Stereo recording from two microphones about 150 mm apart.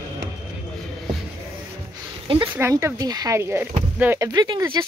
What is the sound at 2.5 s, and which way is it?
Speech, 20° right (ahead or behind).